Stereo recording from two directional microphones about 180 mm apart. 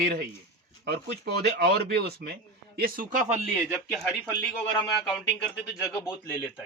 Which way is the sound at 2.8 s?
50° right (ahead or behind).